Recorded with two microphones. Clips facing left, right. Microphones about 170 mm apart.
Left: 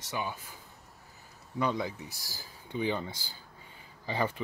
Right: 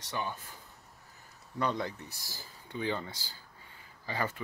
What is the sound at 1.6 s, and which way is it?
Speech, 10° left (ahead or behind).